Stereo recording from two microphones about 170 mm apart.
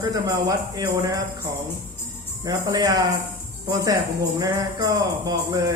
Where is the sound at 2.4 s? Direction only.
25° right (ahead or behind).